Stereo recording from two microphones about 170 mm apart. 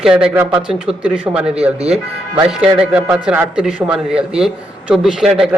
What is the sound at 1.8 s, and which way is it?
Speech, 35° right (ahead or behind).